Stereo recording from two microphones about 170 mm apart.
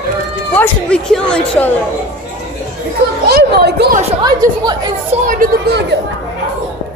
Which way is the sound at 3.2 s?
70° right (ahead or behind).